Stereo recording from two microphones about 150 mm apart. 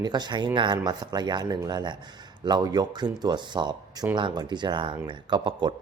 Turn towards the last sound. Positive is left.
turn(degrees=-30)  # may be behind; listen again after turning